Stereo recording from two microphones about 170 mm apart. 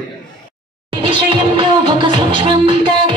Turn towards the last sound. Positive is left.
turn(degrees=-30)  # may be behind; listen again after turning